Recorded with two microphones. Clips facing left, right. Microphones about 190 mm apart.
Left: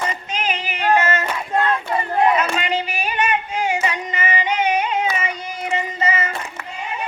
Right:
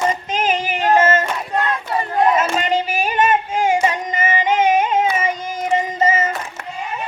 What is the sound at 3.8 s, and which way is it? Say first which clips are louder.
Child singing: right 4 dB; 45° right (ahead or behind).